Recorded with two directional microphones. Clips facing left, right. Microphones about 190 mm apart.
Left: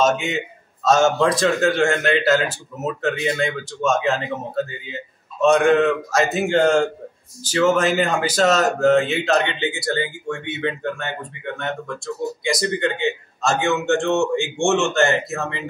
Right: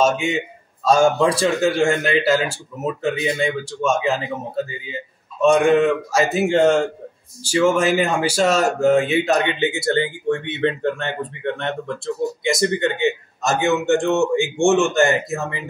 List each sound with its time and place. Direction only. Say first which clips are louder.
0.0 s speech: right 1 dB; 10° right (ahead or behind)
5.5 s speech: right 1 dB; 10° right (ahead or behind); by 10.9 s 30° right (ahead or behind)
12.4 s speech: right 2 dB; 20° right (ahead or behind)